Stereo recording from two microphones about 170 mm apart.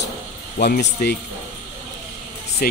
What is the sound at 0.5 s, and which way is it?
Speech, 60° left (ahead or behind).